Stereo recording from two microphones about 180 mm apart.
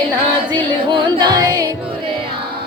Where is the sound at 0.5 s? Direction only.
25° right (ahead or behind).